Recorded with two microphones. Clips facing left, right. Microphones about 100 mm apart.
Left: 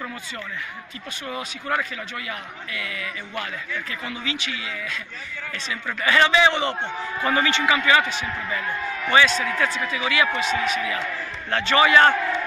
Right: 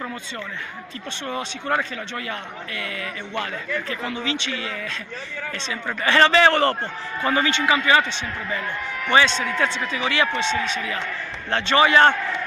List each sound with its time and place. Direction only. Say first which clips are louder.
1.2 s a man's voice: right 3 dB; 30° right (ahead or behind); by 6.8 s 45° right (ahead or behind)
7.2 s a man's voice: right 1 dB; 25° right (ahead or behind)
9.1 s a man's voice: right 1 dB; 30° right (ahead or behind)